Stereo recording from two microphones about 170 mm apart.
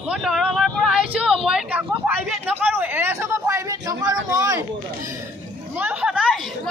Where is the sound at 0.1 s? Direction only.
Centre (ahead or behind); by 4.6 s 20° right (ahead or behind).